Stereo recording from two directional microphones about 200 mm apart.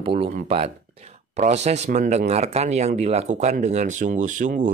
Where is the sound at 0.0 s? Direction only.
25° right (ahead or behind).